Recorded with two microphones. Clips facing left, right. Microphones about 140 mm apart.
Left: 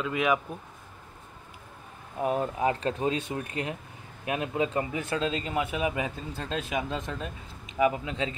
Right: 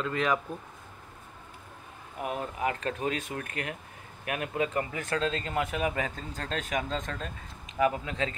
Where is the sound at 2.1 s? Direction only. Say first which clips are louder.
Left 6 dB; 30° left (ahead or behind).